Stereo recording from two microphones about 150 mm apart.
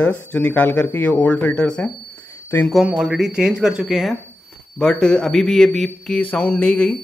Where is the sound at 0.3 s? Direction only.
10° left (ahead or behind).